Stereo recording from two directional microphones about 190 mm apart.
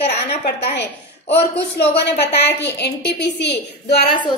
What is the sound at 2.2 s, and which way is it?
A woman's voice, 60° left (ahead or behind).